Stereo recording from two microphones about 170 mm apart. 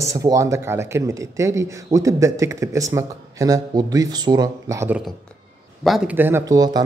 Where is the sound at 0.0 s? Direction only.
20° right (ahead or behind).